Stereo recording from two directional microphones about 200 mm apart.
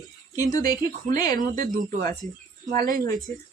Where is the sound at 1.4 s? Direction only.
45° right (ahead or behind).